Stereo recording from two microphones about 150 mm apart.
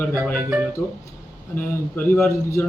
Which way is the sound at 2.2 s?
15° left (ahead or behind).